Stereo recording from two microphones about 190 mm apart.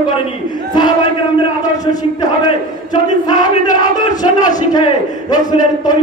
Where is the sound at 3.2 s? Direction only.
20° left (ahead or behind).